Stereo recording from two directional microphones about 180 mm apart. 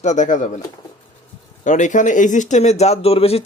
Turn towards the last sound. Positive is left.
turn(degrees=35)  # may be behind; listen again after turning